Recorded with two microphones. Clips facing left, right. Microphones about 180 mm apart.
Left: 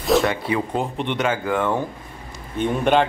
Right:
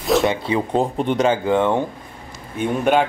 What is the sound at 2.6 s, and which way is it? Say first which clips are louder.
Speech: right 1 dB; 5° right (ahead or behind).